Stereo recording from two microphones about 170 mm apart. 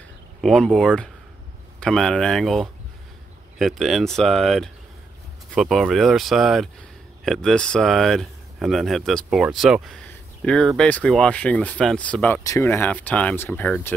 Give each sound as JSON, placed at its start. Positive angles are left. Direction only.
{"t": 0.4, "sound": "speech", "side_deg": 0}